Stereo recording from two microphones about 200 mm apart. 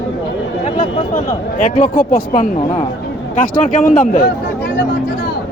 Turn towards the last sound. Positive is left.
turn(degrees=45)  # may be behind; listen again after turning